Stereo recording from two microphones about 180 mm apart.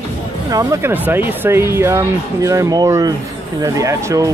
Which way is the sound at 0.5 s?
20° right (ahead or behind).